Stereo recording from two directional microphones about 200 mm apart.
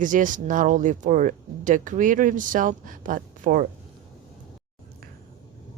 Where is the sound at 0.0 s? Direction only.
40° right (ahead or behind).